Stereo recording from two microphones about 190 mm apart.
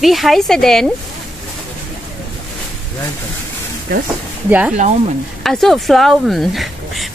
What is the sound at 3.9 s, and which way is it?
Speech, 55° right (ahead or behind).